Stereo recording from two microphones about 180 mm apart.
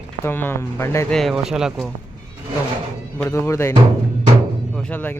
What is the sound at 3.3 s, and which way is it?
Speech, 15° left (ahead or behind).